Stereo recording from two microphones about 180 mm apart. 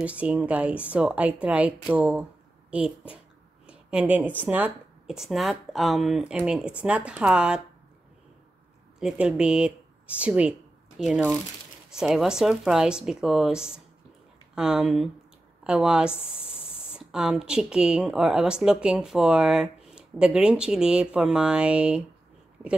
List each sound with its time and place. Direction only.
0.0 s a woman's voice: 5° right (ahead or behind)
3.6 s speech: 5° right (ahead or behind)
9.0 s speech: 5° right (ahead or behind)
16.3 s a sound: 30° left (ahead or behind)
16.9 s speech: 5° right (ahead or behind)